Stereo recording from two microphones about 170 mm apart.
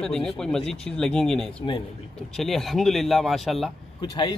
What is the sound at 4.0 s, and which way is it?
Speech, 25° left (ahead or behind).